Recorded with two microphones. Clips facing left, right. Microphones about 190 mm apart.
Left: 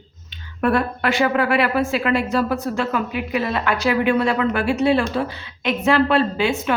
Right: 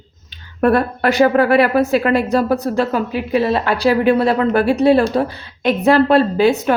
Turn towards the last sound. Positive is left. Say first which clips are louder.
# right 6 dB
turn(degrees=-40)  # may be behind; listen again after turning